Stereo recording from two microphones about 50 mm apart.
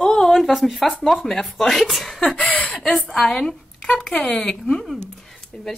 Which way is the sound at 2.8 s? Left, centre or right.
Centre.